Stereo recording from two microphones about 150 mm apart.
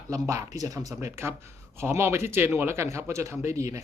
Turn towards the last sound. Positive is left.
turn(degrees=-20)  # may be behind; listen again after turning